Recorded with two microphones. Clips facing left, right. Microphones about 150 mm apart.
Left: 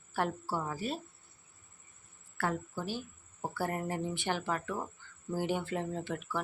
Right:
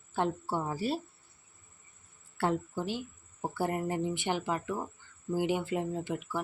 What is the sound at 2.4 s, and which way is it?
Speech, 20° right (ahead or behind).